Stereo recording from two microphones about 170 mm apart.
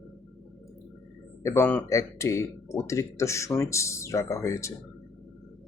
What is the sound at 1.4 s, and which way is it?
Speech, 15° left (ahead or behind).